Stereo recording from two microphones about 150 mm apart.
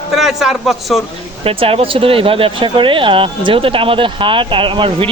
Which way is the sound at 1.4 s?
40° right (ahead or behind).